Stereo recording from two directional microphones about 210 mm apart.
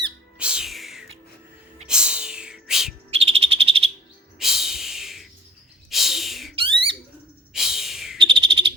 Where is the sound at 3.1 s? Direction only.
30° right (ahead or behind).